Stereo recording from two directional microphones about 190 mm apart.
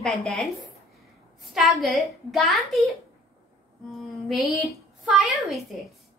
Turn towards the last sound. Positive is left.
turn(degrees=0)  # may be behind; listen again after turning